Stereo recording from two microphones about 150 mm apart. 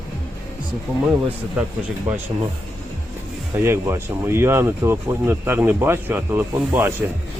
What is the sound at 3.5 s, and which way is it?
Speech, 15° right (ahead or behind).